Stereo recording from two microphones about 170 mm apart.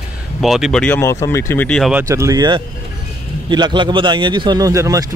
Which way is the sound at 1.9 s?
15° right (ahead or behind).